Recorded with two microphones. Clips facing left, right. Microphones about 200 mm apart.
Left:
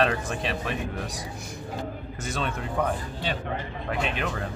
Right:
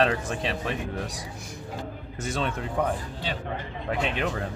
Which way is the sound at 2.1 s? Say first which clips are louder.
Right 2 dB; 30° right (ahead or behind).